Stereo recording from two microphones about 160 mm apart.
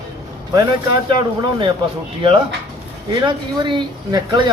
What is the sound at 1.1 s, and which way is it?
Speech, 30° right (ahead or behind).